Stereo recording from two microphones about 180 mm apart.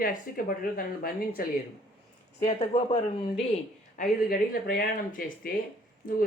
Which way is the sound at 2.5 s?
35° left (ahead or behind).